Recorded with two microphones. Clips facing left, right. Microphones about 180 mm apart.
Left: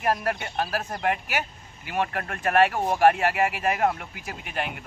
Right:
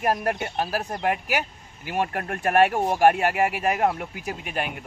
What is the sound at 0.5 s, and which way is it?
Speech, 15° right (ahead or behind).